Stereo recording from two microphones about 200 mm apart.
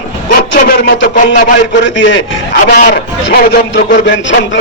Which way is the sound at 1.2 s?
40° left (ahead or behind).